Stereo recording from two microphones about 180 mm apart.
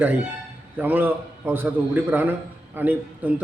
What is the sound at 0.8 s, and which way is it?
A man's voice, 10° right (ahead or behind).